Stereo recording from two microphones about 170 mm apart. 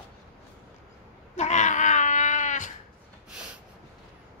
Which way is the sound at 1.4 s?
45° left (ahead or behind).